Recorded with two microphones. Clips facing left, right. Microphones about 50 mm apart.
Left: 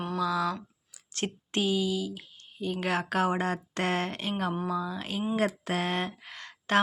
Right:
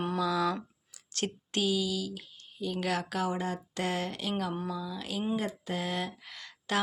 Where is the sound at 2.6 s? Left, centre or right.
Left.